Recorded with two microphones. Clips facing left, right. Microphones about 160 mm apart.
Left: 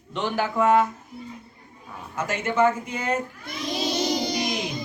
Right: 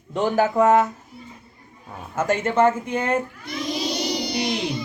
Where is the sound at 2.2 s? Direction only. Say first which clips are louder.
Right 3 dB; 50° right (ahead or behind).